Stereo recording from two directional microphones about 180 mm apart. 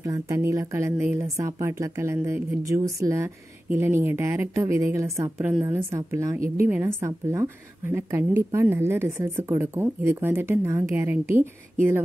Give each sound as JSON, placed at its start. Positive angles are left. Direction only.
{"t": 0.0, "sound": "speech", "side_deg": -15}